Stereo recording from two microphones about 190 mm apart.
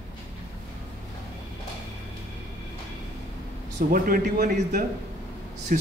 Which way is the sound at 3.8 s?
50° right (ahead or behind).